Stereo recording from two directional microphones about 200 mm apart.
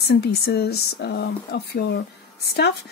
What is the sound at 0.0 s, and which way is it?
Speech, 55° left (ahead or behind).